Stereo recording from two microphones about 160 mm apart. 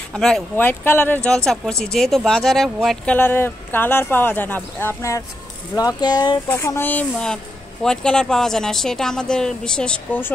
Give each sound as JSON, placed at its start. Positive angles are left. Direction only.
{"t": 0.1, "sound": "speech", "side_deg": 5}
{"t": 3.2, "sound": "speech", "side_deg": 15}
{"t": 6.5, "sound": "speech", "side_deg": 15}